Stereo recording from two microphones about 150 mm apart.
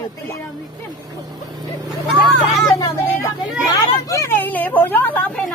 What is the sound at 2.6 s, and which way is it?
A woman's voice, 25° left (ahead or behind).